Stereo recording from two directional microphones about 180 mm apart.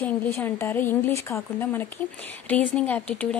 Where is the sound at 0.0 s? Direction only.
10° left (ahead or behind).